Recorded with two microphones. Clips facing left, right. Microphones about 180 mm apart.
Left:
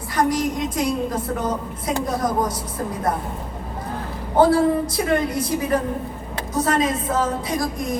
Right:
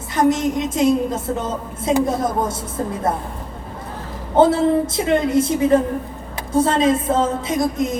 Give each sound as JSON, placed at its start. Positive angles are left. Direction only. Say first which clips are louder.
{"t": 0.2, "sound": "a woman's voice", "louder": "right 4 dB", "side_deg": -25}
{"t": 4.4, "sound": "a woman's voice", "louder": "right 2 dB", "side_deg": -25}